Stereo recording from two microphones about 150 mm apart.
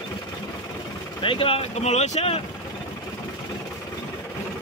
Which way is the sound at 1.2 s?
35° left (ahead or behind).